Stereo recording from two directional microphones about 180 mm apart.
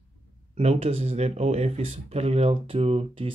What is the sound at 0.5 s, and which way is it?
Speech, 35° right (ahead or behind).